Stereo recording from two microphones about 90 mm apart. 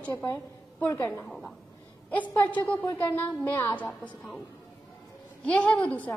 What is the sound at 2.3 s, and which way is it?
A woman's voice, 20° left (ahead or behind).